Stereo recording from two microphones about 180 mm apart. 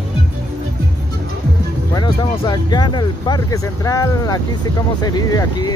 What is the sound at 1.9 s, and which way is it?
Speech, 25° left (ahead or behind).